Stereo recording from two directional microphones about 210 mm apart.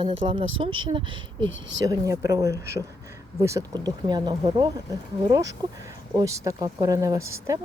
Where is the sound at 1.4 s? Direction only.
60° right (ahead or behind).